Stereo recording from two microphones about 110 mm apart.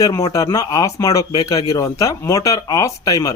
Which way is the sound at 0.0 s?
30° left (ahead or behind).